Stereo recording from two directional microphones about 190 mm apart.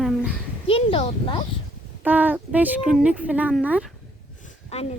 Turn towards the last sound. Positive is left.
turn(degrees=35)  # may be behind; listen again after turning